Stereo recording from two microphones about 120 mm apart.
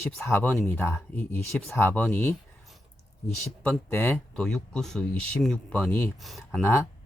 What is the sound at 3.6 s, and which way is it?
Speech, 10° left (ahead or behind).